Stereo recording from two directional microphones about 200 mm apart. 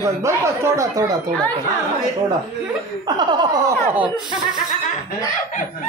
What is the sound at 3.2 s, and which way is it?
Speech, 20° right (ahead or behind).